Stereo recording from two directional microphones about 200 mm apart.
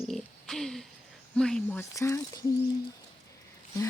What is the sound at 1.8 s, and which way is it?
Speech, 15° left (ahead or behind).